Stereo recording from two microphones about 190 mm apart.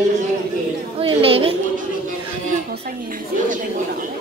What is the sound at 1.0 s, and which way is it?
Speech, 30° right (ahead or behind).